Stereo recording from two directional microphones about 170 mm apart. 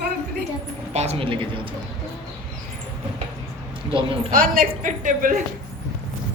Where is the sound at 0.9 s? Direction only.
35° right (ahead or behind).